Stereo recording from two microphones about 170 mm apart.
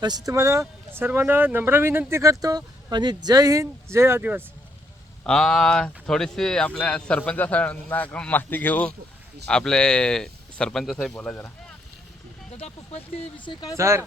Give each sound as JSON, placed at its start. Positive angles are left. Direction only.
{"t": 0.3, "sound": "speech", "side_deg": -20}
{"t": 5.2, "sound": "speech", "side_deg": 5}
{"t": 12.5, "sound": "speech", "side_deg": 40}
{"t": 13.4, "sound": "speech", "side_deg": 25}
{"t": 13.7, "sound": "speech", "side_deg": -15}